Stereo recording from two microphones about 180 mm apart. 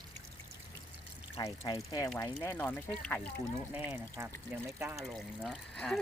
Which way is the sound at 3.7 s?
10° right (ahead or behind).